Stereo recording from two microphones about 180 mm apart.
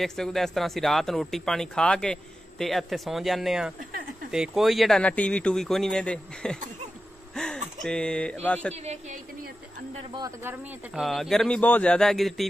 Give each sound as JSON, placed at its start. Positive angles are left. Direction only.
{"t": 0.0, "sound": "speech", "side_deg": 0}
{"t": 7.3, "sound": "a sound", "side_deg": 5}
{"t": 8.7, "sound": "speech", "side_deg": -40}
{"t": 11.0, "sound": "speech", "side_deg": 0}